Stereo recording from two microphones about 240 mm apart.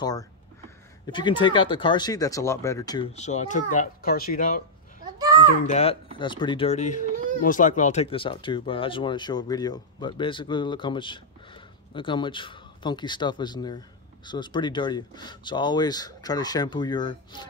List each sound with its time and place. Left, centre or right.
0.0 s speech: centre
3.1 s speech: left
5.7 s speech: left